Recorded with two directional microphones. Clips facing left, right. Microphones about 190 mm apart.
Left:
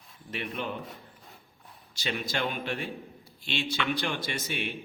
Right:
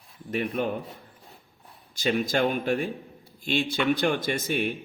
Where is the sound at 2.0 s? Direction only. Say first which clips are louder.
Right 8 dB; 45° right (ahead or behind).